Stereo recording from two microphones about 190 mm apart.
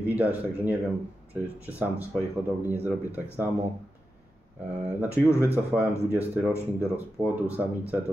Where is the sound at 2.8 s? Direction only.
15° left (ahead or behind).